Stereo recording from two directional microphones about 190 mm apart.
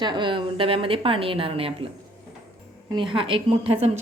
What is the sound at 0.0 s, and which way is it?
A woman's voice, 25° right (ahead or behind).